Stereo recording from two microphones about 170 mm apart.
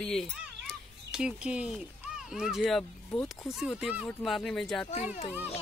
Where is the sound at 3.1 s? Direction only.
20° left (ahead or behind).